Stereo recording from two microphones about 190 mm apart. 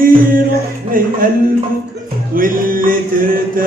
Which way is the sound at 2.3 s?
45° right (ahead or behind).